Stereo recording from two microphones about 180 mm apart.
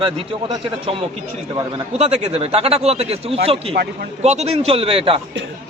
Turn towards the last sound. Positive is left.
turn(degrees=-30)  # may be behind; listen again after turning